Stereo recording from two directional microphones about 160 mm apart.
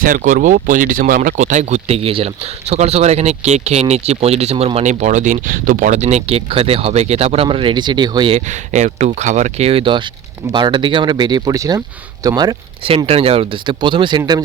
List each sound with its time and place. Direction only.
0.0 s speech: 55° right (ahead or behind); by 8.4 s 30° right (ahead or behind)
8.4 s speech: 45° right (ahead or behind); by 12.9 s 25° right (ahead or behind)
13.1 s speech: 40° right (ahead or behind)